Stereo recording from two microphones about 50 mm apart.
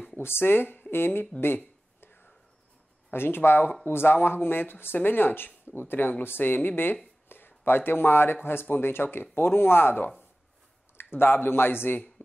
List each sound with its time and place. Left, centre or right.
0.2 s speech: left
3.1 s speech: left
11.1 s speech: left